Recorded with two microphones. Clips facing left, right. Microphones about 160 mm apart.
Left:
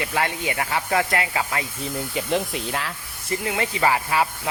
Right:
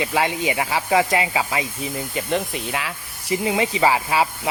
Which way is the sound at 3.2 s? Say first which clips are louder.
Right 4 dB; 15° right (ahead or behind).